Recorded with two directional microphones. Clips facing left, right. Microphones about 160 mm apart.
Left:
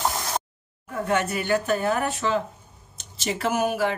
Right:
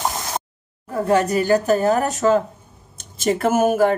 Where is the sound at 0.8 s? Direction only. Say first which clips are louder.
Right 7 dB; 35° right (ahead or behind).